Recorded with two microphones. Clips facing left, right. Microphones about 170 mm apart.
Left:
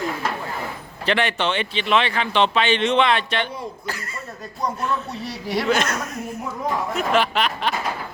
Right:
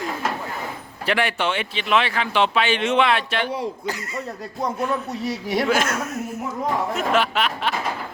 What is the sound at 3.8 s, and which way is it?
Speech, 20° right (ahead or behind).